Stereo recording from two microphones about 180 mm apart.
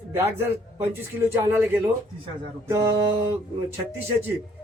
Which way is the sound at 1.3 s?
10° right (ahead or behind).